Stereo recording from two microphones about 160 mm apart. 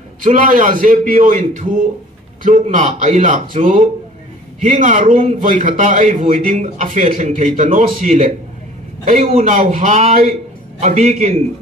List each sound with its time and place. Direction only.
0.2 s a man's voice: 55° right (ahead or behind)
9.3 s a man's voice: 45° right (ahead or behind)